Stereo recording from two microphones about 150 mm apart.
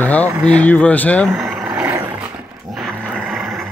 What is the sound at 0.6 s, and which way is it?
Speech, 10° left (ahead or behind).